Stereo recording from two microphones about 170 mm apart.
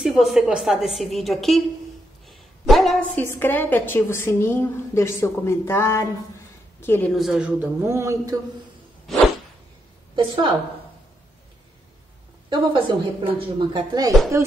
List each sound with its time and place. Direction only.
0.0 s a woman's voice: centre (ahead or behind)
7.1 s speech: centre (ahead or behind)
10.1 s a woman's voice: 25° right (ahead or behind)
12.4 s a woman's voice: 30° right (ahead or behind)